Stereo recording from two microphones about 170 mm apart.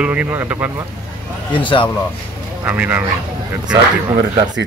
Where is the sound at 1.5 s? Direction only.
30° left (ahead or behind).